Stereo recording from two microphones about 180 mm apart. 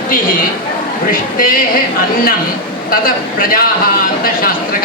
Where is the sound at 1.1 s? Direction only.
50° left (ahead or behind).